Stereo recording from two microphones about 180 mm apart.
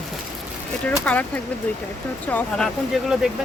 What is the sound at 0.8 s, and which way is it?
Speech, 10° left (ahead or behind).